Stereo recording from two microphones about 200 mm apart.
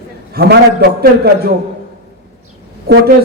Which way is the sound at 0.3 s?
55° right (ahead or behind).